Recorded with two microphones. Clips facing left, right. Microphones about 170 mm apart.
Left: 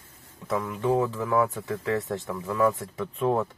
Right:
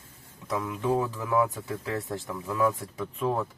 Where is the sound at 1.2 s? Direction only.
10° right (ahead or behind).